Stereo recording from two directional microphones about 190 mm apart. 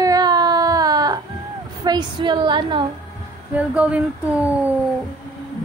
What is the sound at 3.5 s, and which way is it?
Speech, 5° right (ahead or behind).